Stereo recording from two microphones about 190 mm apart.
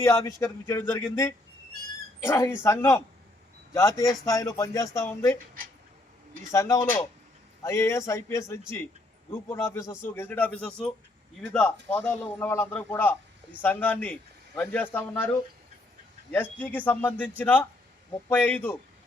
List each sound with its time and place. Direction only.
0.0 s a man's voice: 15° left (ahead or behind)
6.5 s a man's voice: 15° left (ahead or behind)
16.3 s a man's voice: 10° left (ahead or behind)